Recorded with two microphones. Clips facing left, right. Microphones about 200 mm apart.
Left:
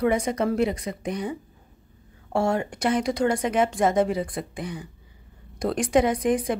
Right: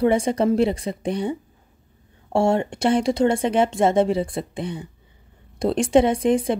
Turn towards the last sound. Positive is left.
turn(degrees=-25)  # may be behind; listen again after turning